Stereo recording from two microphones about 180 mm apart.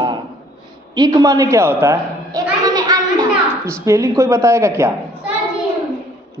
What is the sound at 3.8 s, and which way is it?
A man's voice, 15° right (ahead or behind).